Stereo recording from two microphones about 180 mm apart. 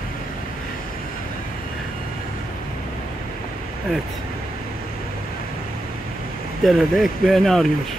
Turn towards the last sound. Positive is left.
turn(degrees=0)  # may be behind; listen again after turning